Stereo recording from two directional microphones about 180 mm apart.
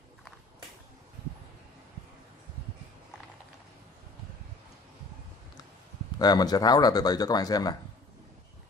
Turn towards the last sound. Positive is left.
turn(degrees=20)  # may be behind; listen again after turning